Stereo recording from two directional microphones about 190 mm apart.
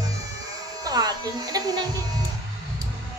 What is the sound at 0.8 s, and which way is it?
Speech, 20° right (ahead or behind).